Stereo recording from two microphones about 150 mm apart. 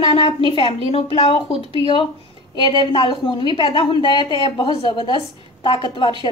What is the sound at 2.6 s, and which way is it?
A woman's voice, 30° left (ahead or behind).